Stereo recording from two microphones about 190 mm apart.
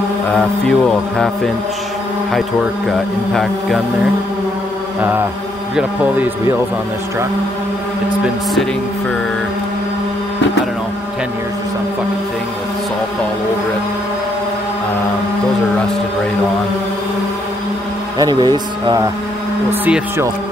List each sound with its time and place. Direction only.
0.4 s speech: 5° left (ahead or behind)
18.2 s speech: 20° right (ahead or behind)
19.7 s speech: 10° right (ahead or behind)